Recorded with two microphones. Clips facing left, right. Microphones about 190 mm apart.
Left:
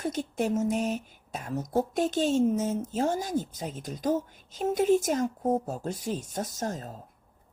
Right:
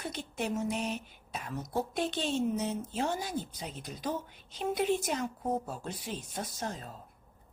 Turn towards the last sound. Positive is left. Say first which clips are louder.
# left 5 dB
turn(degrees=45)  # may be behind; listen again after turning